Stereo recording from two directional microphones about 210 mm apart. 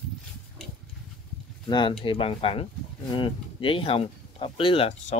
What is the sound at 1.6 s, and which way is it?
Speech, 20° left (ahead or behind).